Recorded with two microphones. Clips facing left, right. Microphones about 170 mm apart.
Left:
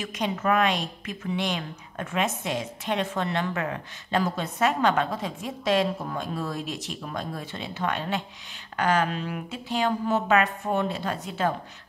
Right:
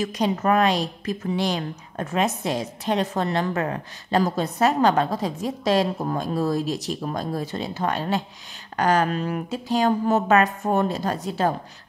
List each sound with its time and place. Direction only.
0.0 s a woman's voice: 40° right (ahead or behind)